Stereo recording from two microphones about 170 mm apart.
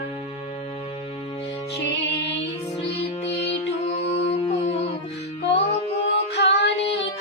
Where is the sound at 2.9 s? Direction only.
35° left (ahead or behind).